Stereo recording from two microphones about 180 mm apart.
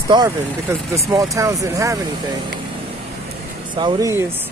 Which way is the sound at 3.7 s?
25° right (ahead or behind).